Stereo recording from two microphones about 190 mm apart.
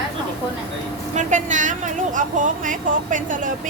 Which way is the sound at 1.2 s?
40° right (ahead or behind).